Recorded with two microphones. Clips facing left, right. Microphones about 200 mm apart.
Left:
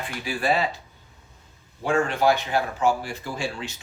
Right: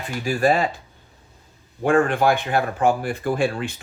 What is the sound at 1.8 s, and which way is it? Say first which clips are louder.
Speech: right 4 dB; 55° right (ahead or behind).